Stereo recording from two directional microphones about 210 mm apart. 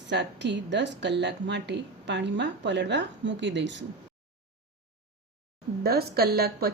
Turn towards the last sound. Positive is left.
turn(degrees=-45)  # may be behind; listen again after turning